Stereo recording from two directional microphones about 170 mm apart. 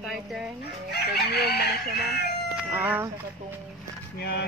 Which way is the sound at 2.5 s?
10° right (ahead or behind).